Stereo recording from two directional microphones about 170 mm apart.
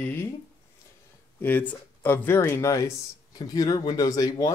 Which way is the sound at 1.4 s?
10° left (ahead or behind).